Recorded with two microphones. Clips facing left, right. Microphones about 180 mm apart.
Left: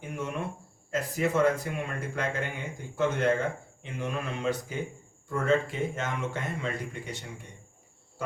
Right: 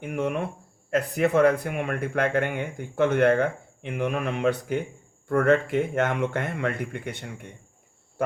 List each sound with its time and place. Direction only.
0.0 s speech: 65° right (ahead or behind)